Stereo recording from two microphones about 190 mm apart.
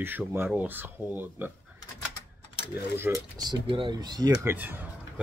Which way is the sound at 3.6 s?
25° right (ahead or behind).